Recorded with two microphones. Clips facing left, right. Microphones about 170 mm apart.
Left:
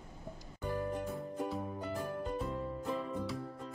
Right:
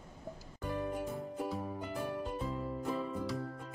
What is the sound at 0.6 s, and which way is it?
Music, 5° right (ahead or behind).